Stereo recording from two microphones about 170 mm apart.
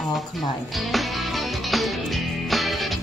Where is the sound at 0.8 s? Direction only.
Centre (ahead or behind).